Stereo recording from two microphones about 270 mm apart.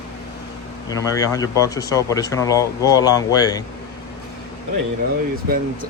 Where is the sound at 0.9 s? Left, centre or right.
Centre.